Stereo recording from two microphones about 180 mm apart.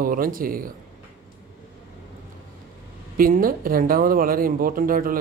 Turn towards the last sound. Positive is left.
turn(degrees=-50)  # may be behind; listen again after turning